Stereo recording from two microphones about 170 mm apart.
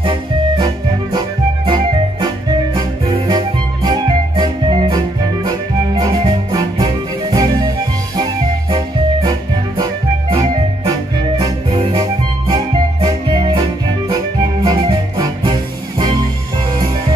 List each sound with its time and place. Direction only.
0.0 s music: 30° right (ahead or behind)